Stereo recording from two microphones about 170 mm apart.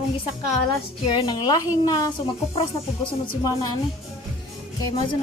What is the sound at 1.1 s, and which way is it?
A woman's voice, 25° left (ahead or behind).